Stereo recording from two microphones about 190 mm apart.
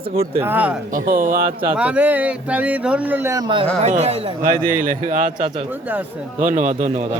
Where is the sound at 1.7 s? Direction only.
5° right (ahead or behind).